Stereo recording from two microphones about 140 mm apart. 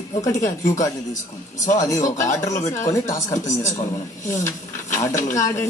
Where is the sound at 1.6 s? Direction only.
65° left (ahead or behind).